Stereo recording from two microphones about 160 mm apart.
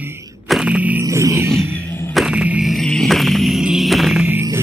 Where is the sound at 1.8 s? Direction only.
15° left (ahead or behind).